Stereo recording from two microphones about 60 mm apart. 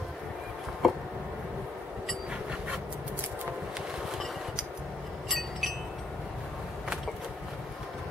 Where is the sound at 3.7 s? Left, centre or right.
Centre.